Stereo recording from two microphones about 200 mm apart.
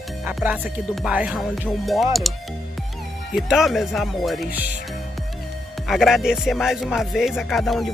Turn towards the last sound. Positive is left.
turn(degrees=0)  # may be behind; listen again after turning